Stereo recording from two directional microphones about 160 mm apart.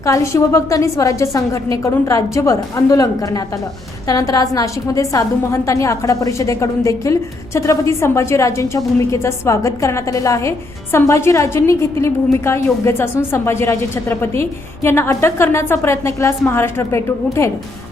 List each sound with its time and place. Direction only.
0.0 s a woman's voice: 20° left (ahead or behind)